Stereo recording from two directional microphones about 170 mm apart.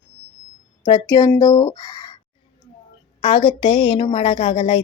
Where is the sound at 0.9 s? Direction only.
25° left (ahead or behind).